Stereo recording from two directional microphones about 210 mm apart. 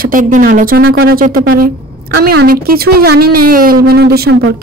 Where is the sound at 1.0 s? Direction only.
45° right (ahead or behind).